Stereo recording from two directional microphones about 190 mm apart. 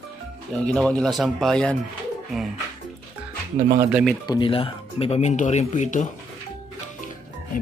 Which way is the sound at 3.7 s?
5° right (ahead or behind).